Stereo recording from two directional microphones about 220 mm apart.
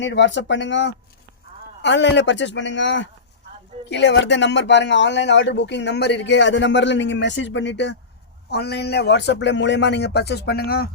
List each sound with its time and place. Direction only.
0.0 s speech: 55° left (ahead or behind)